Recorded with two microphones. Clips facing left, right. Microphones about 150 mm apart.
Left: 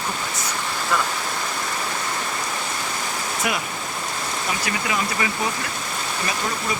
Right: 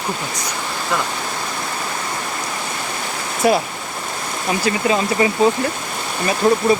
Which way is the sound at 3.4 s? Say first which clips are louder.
Right 12 dB; 30° right (ahead or behind).